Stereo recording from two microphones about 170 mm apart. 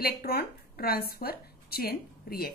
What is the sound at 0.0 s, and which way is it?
A woman's voice, 65° left (ahead or behind).